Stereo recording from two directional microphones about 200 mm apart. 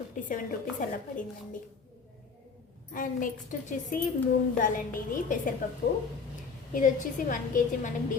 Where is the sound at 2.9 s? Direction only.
40° left (ahead or behind).